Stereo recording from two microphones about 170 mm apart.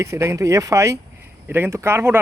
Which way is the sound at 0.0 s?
15° right (ahead or behind).